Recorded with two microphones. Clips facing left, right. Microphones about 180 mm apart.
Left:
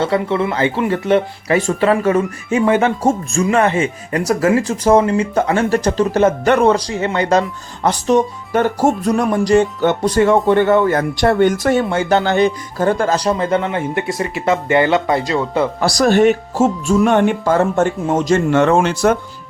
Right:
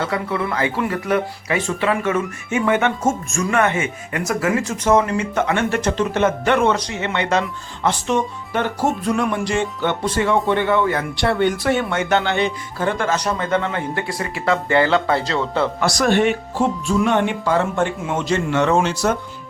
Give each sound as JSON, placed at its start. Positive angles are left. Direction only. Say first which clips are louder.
{"t": 0.0, "sound": "speech", "louder": "left 6 dB", "side_deg": 25}
{"t": 1.5, "sound": "speech", "louder": "left 6 dB", "side_deg": 40}
{"t": 15.8, "sound": "speech", "louder": "left 5 dB", "side_deg": 35}